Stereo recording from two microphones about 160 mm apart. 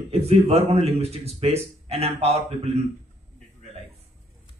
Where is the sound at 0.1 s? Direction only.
40° right (ahead or behind).